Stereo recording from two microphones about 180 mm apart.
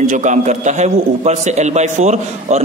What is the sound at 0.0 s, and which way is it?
A man's voice, 45° right (ahead or behind).